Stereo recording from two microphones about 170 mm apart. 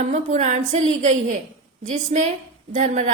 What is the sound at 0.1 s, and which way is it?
A woman's voice, 45° right (ahead or behind).